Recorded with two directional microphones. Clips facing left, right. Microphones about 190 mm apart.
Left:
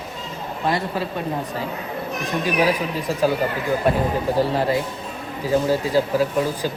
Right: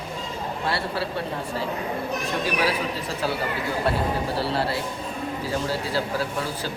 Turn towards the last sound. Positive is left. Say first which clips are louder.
# left 7 dB
turn(degrees=15)  # may be behind; listen again after turning